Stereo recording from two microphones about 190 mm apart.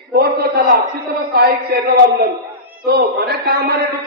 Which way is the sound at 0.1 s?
55° right (ahead or behind).